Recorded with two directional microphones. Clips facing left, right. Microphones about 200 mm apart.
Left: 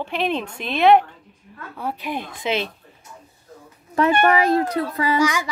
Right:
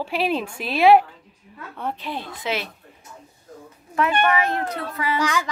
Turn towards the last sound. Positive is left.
turn(degrees=10)  # may be behind; listen again after turning